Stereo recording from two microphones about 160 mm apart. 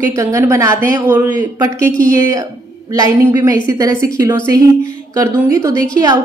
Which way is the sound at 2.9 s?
20° right (ahead or behind).